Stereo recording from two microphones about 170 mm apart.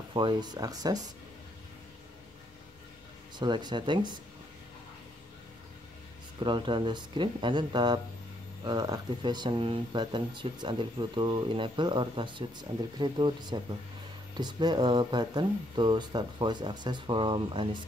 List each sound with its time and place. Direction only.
0.1 s speech: 30° right (ahead or behind)
3.3 s speech: 25° right (ahead or behind)
6.4 s speech: 30° right (ahead or behind)